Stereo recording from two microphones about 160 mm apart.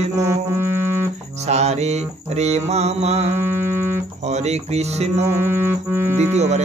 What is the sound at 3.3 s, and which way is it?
Music, 15° right (ahead or behind).